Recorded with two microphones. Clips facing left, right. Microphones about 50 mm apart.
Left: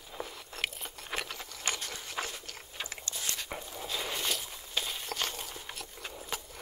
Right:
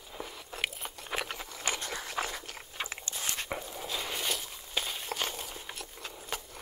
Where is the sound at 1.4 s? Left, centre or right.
Right.